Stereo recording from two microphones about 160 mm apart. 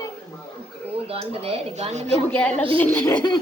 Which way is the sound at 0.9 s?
35° right (ahead or behind).